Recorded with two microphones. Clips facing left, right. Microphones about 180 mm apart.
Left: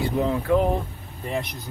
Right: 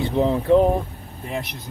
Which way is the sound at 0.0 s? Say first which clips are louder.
Right 3 dB; 25° right (ahead or behind).